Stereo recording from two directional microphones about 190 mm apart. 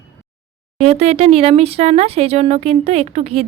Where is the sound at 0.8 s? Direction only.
35° right (ahead or behind).